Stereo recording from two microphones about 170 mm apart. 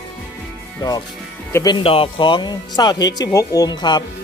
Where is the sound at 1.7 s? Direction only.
35° left (ahead or behind).